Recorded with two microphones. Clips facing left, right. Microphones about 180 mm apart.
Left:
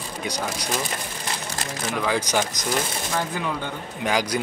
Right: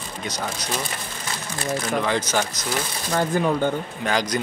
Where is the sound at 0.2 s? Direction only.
10° left (ahead or behind).